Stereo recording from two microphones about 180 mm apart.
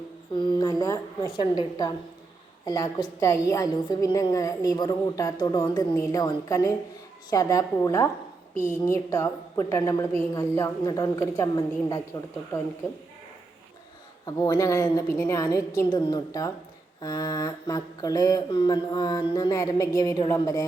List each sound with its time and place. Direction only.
0.3 s a sound: 20° left (ahead or behind)
1.3 s mantra: 25° left (ahead or behind)
5.9 s a woman's voice: 15° left (ahead or behind)
10.2 s mantra: 15° left (ahead or behind)
14.3 s mantra: 25° left (ahead or behind)